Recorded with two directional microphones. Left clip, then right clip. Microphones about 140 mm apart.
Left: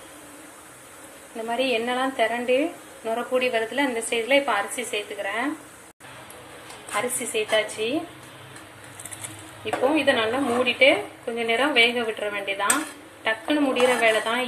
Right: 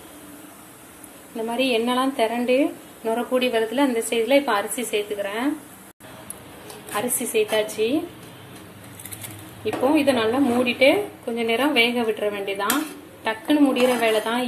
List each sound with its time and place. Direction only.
1.3 s a woman's voice: 15° right (ahead or behind)
6.9 s a woman's voice: 20° right (ahead or behind)
9.7 s a woman's voice: 20° right (ahead or behind)